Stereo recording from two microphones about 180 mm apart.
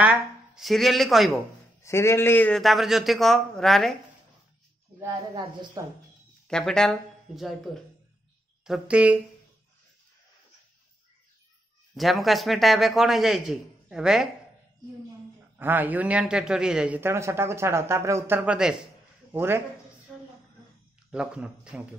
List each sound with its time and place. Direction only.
0.0 s speech: 5° right (ahead or behind)
1.8 s speech: 15° left (ahead or behind)
5.0 s a woman's voice: 25° right (ahead or behind)
6.4 s a man's voice: 5° left (ahead or behind)
11.9 s speech: centre (ahead or behind)
15.5 s a man's voice: 10° right (ahead or behind)
21.1 s speech: 5° right (ahead or behind)